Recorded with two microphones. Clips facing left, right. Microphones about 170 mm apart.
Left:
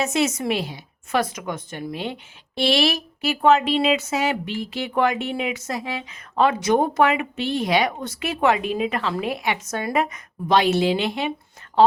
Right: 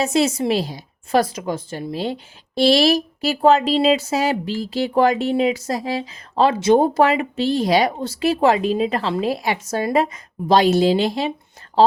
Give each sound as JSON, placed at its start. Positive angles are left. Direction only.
{"t": 0.0, "sound": "a woman's voice", "side_deg": -35}